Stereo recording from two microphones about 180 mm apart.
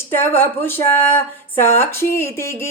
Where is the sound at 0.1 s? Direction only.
10° left (ahead or behind).